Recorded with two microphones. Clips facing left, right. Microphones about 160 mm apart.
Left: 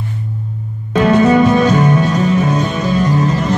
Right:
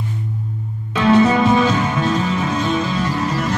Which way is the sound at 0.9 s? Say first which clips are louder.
Left 3 dB; 45° left (ahead or behind).